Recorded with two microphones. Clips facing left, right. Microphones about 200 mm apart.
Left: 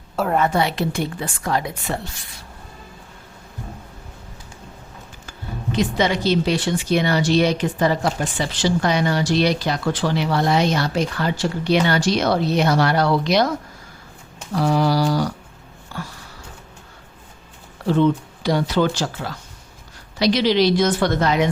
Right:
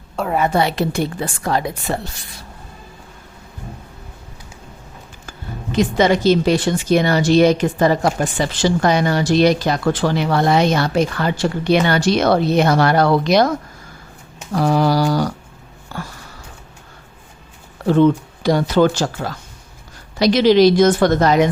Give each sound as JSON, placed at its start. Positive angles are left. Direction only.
{"t": 0.2, "sound": "a woman's voice", "side_deg": 5}
{"t": 0.5, "sound": "a woman's voice", "side_deg": -40}
{"t": 5.7, "sound": "speech", "side_deg": -45}
{"t": 14.5, "sound": "speech", "side_deg": -45}
{"t": 17.8, "sound": "speech", "side_deg": -45}